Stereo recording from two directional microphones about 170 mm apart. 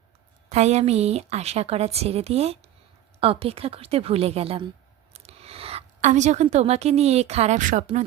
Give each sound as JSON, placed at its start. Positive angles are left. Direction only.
{"t": 0.5, "sound": "a woman's voice", "side_deg": -40}